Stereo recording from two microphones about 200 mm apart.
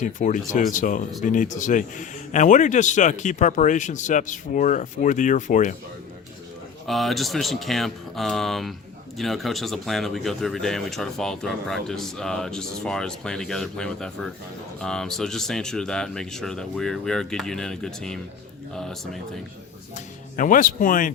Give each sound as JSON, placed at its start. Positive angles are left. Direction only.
{"t": 0.0, "sound": "a man's voice", "side_deg": 40}
{"t": 6.8, "sound": "speech", "side_deg": 0}
{"t": 20.3, "sound": "speech", "side_deg": 40}